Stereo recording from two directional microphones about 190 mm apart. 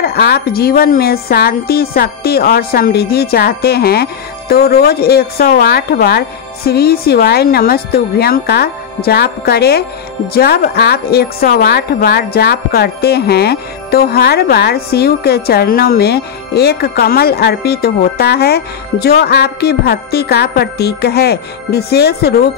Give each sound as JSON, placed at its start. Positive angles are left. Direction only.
{"t": 0.0, "sound": "a woman's voice", "side_deg": 55}